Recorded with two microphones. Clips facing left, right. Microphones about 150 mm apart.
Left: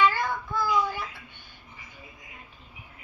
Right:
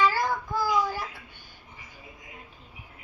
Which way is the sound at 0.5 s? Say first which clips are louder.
Left 1 dB; 40° right (ahead or behind).